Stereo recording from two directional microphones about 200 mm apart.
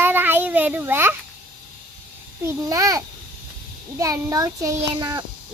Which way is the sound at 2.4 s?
15° right (ahead or behind).